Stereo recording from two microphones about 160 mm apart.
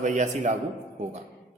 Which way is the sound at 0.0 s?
50° right (ahead or behind).